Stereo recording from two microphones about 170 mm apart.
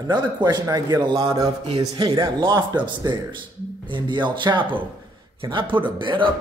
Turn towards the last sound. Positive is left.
turn(degrees=-30)  # may be behind; listen again after turning